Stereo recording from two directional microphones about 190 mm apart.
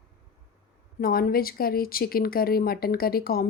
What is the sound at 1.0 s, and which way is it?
Speech, 50° left (ahead or behind).